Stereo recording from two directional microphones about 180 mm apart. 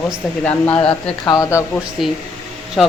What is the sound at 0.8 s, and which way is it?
Speech, 20° left (ahead or behind).